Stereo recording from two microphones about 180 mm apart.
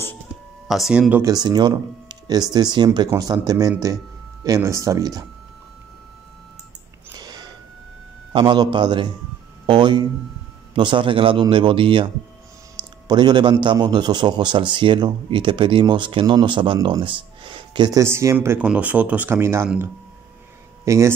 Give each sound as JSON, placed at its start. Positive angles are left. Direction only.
{"t": 0.7, "sound": "speech", "side_deg": 0}
{"t": 1.2, "sound": "a man's voice", "side_deg": -20}
{"t": 7.2, "sound": "a sound", "side_deg": -25}
{"t": 8.3, "sound": "a man's voice", "side_deg": -25}
{"t": 13.1, "sound": "a man's voice", "side_deg": -25}
{"t": 20.8, "sound": "speech", "side_deg": -15}